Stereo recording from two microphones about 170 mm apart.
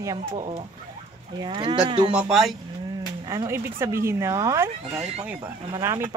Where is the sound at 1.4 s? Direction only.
30° right (ahead or behind).